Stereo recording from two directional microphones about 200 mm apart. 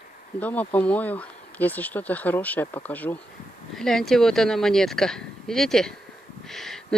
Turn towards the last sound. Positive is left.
turn(degrees=0)  # may be behind; listen again after turning